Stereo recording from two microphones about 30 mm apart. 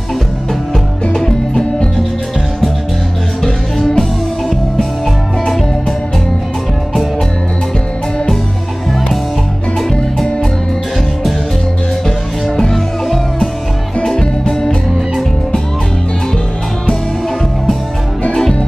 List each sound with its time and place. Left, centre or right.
1.1 s music: centre
3.4 s music: centre
12.4 s music: centre
14.5 s music: left